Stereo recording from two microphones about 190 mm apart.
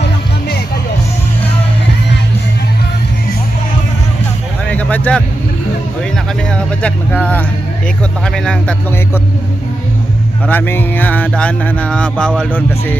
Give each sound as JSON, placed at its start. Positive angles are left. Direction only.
{"t": 0.0, "sound": "music", "side_deg": 60}
{"t": 4.6, "sound": "a sound", "side_deg": 5}
{"t": 6.5, "sound": "music", "side_deg": 5}
{"t": 8.2, "sound": "speech", "side_deg": 5}
{"t": 10.4, "sound": "speech", "side_deg": 10}